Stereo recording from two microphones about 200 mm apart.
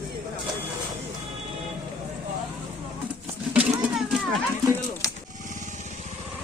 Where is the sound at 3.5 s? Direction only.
5° right (ahead or behind).